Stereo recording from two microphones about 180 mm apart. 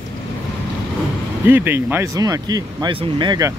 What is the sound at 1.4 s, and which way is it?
Speech, 10° right (ahead or behind).